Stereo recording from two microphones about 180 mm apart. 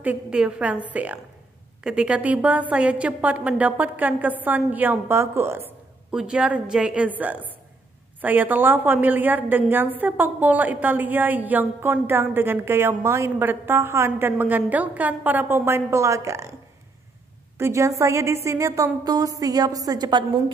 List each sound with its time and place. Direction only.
0.0 s a woman's voice: 5° right (ahead or behind)
17.6 s a woman's voice: 15° right (ahead or behind)